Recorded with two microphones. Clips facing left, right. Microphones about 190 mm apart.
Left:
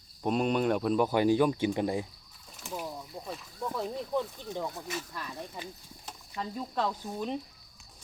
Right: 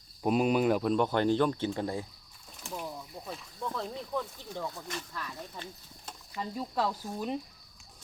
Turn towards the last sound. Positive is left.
turn(degrees=-5)  # may be behind; listen again after turning